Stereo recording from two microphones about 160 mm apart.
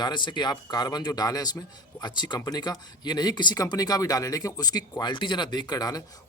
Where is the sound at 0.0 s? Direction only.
30° left (ahead or behind).